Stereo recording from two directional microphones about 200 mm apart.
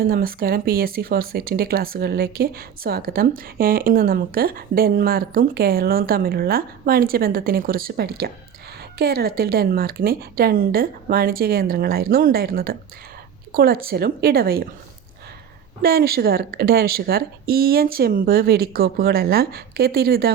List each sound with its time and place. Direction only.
0.0 s speech: 45° right (ahead or behind)
15.8 s speech: 50° right (ahead or behind)